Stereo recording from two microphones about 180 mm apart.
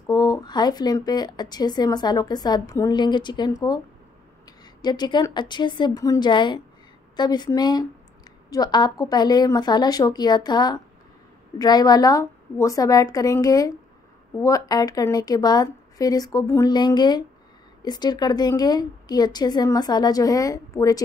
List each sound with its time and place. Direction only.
0.0 s speech: 20° left (ahead or behind)